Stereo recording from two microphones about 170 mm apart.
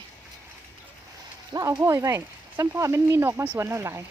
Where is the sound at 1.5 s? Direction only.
20° right (ahead or behind).